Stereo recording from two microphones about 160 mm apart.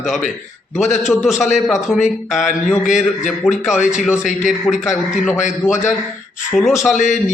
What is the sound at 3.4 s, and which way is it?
Speech, centre (ahead or behind).